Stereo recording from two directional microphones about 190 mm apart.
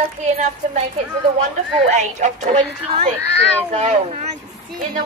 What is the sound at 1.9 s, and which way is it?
Speech, 40° right (ahead or behind).